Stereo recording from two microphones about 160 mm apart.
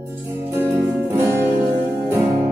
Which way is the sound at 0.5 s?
15° right (ahead or behind).